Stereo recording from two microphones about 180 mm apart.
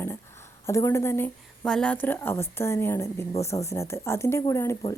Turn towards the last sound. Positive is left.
turn(degrees=15)  # may be behind; listen again after turning